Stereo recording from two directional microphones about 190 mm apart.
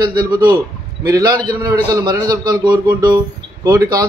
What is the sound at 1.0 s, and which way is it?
A man's voice, 20° right (ahead or behind).